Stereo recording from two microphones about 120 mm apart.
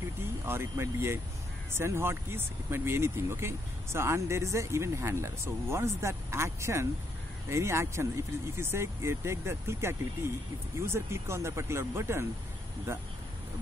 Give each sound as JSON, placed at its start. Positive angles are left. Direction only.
{"t": 0.5, "sound": "speech", "side_deg": -20}